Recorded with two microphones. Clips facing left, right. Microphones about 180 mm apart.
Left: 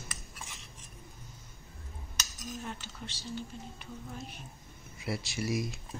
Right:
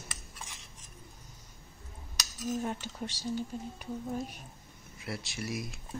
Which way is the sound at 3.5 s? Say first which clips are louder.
Right 6 dB; 45° right (ahead or behind).